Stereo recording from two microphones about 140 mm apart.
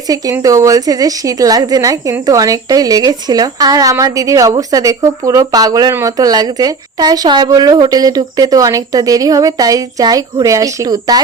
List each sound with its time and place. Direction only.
0.1 s a woman's voice: 25° right (ahead or behind)